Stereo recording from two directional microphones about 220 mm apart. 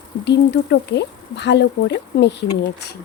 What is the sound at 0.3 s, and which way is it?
Speech, 50° left (ahead or behind).